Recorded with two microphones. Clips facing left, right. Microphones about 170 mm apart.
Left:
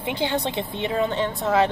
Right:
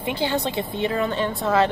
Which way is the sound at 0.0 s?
20° left (ahead or behind).